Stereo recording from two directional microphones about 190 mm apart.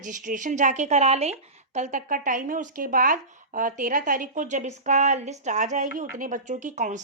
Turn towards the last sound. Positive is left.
turn(degrees=-40)  # may be behind; listen again after turning